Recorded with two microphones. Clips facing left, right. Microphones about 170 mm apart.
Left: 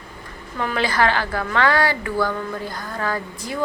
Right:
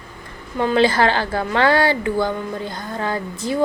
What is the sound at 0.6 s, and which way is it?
A woman's voice, 25° right (ahead or behind).